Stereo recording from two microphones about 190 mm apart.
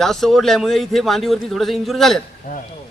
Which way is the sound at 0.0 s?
Centre (ahead or behind).